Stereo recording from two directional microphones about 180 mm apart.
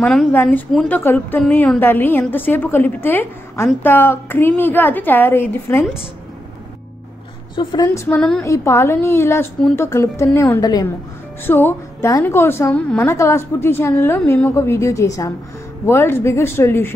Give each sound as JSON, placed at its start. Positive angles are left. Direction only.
{"t": 0.0, "sound": "a woman's voice", "side_deg": 5}
{"t": 7.5, "sound": "a woman's voice", "side_deg": 20}
{"t": 8.2, "sound": "a woman's voice", "side_deg": 5}
{"t": 8.5, "sound": "a woman's voice", "side_deg": 15}